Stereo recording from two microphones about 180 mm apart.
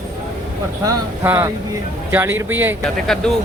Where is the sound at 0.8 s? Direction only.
15° right (ahead or behind).